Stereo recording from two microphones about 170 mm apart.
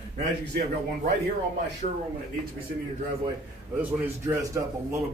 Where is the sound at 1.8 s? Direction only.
50° right (ahead or behind).